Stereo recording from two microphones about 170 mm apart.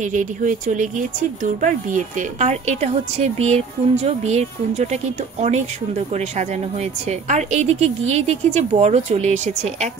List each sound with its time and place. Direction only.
0.0 s speech: 50° right (ahead or behind)